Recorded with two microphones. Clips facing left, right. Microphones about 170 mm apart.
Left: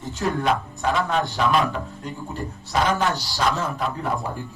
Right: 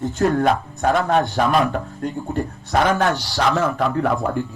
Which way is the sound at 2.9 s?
80° right.